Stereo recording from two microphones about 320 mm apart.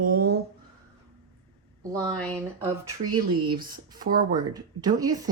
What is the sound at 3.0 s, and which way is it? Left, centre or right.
A woman's voice, centre.